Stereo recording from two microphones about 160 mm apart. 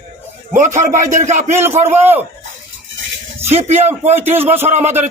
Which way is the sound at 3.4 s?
45° right (ahead or behind).